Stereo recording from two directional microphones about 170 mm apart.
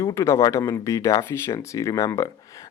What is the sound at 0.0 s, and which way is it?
Speech, 15° left (ahead or behind).